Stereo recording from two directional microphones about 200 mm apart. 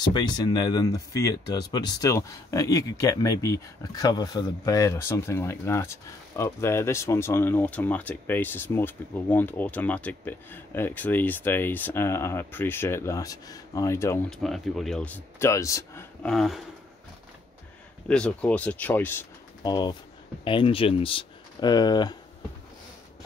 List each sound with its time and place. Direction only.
0.0 s speech: 20° left (ahead or behind)
14.4 s speech: centre (ahead or behind)
18.0 s speech: 5° left (ahead or behind); by 22.1 s 20° left (ahead or behind)